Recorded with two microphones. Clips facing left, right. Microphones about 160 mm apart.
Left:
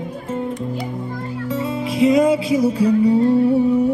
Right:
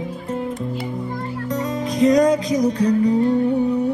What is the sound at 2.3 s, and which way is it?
Music, 40° right (ahead or behind).